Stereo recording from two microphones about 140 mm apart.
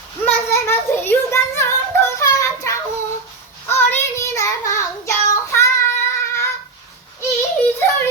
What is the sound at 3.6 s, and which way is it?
Child singing, 15° left (ahead or behind).